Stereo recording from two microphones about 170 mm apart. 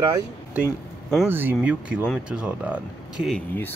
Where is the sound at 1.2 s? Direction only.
10° right (ahead or behind).